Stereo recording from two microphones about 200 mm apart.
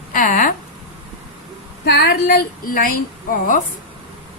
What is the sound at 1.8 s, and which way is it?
Speech, 55° left (ahead or behind).